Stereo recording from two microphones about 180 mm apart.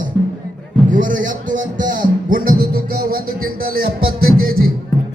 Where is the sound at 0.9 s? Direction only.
50° right (ahead or behind).